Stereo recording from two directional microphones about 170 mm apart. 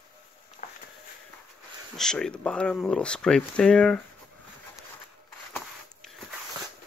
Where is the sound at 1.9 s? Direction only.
5° left (ahead or behind).